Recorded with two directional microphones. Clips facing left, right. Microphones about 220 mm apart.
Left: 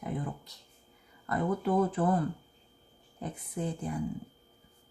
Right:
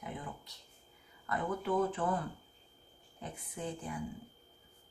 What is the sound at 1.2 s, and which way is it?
Speech, 40° left (ahead or behind).